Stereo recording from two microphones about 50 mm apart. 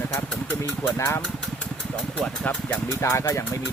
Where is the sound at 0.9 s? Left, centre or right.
Left.